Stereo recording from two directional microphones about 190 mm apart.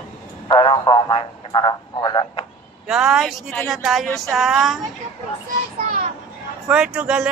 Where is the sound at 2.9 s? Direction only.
5° right (ahead or behind).